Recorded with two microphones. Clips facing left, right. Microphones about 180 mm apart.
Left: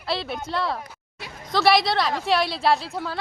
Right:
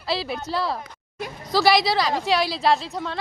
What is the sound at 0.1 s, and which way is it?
A woman's voice, centre (ahead or behind).